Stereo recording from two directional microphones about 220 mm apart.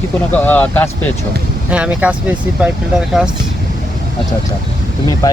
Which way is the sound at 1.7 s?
5° right (ahead or behind).